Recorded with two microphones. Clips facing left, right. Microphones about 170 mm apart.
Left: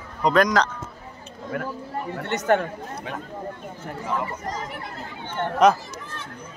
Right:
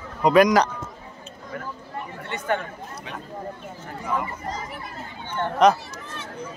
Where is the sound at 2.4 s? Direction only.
50° left (ahead or behind).